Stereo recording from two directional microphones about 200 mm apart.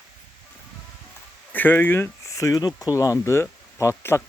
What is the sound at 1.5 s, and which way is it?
Speech, 10° left (ahead or behind).